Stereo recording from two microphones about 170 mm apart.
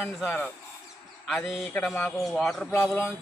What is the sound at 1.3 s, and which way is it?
Speech, centre (ahead or behind).